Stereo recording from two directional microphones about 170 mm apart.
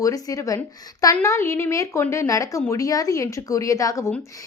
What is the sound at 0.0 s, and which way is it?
A woman's voice, 20° left (ahead or behind).